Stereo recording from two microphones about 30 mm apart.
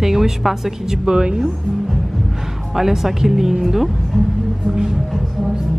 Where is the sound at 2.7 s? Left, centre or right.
Centre.